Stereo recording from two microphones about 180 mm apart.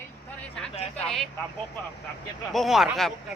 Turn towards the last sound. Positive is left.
turn(degrees=0)  # may be behind; listen again after turning